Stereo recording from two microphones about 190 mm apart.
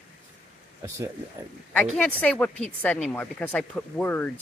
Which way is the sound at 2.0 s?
5° left (ahead or behind).